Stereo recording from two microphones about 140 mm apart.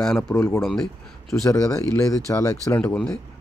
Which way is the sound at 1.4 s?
25° left (ahead or behind).